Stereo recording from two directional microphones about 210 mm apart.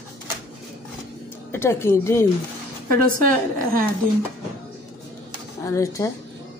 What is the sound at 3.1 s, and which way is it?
Speech, 40° right (ahead or behind).